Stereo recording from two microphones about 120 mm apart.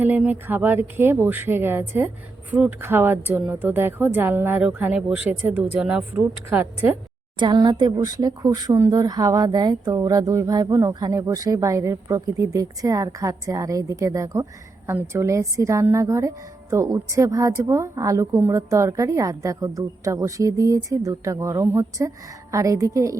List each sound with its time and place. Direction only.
0.0 s a woman's voice: 15° right (ahead or behind)
7.3 s a woman's voice: 40° right (ahead or behind)